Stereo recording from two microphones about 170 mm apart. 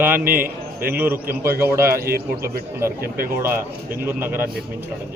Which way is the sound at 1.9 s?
65° right (ahead or behind).